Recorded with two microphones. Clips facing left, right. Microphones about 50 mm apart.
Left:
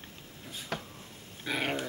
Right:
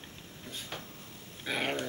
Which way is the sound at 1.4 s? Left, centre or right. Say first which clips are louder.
Left 1 dB; centre.